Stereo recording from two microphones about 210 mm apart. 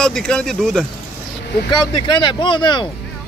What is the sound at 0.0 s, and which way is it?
Speech, 5° left (ahead or behind).